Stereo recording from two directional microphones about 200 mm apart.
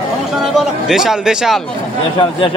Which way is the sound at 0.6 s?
Centre (ahead or behind).